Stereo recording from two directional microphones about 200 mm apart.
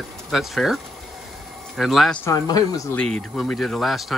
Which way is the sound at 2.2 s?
15° left (ahead or behind).